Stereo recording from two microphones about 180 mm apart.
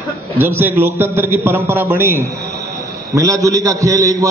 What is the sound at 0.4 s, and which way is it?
A man's voice, 10° right (ahead or behind).